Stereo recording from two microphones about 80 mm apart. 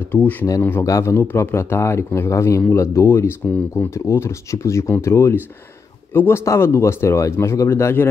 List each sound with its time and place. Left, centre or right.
0.1 s speech: left
0.8 s speech: left
1.1 s speech: left